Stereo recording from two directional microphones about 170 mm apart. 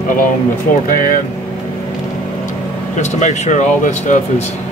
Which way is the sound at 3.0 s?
45° left (ahead or behind).